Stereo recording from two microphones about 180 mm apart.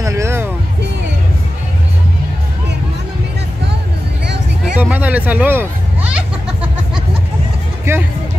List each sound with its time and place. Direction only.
0.0 s music: 15° right (ahead or behind)
4.7 s a sound: 10° right (ahead or behind)
7.9 s music: 15° right (ahead or behind)